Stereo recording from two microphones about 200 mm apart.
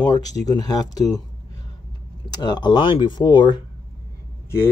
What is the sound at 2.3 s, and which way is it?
Speech, 20° left (ahead or behind).